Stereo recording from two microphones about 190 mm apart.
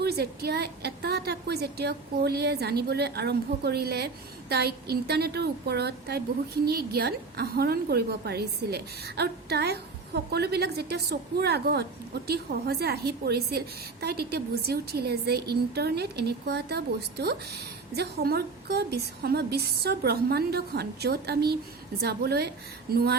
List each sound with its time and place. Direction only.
0.0 s a woman's voice: 55° right (ahead or behind)